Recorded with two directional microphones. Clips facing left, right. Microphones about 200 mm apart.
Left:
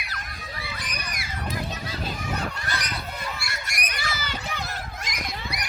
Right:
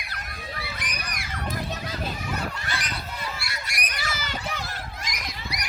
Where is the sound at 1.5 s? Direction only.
50° right (ahead or behind).